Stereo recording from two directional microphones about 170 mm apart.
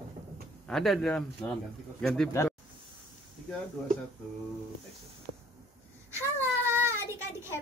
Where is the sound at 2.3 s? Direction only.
15° left (ahead or behind).